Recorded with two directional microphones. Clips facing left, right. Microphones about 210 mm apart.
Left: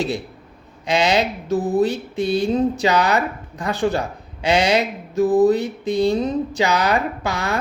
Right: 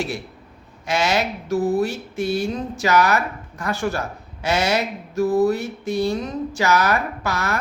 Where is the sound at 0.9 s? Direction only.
15° left (ahead or behind).